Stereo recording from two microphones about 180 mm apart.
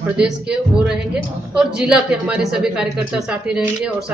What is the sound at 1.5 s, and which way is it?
Speech, 5° right (ahead or behind).